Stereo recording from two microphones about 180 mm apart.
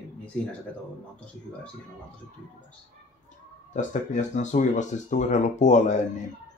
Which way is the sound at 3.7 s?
45° left (ahead or behind).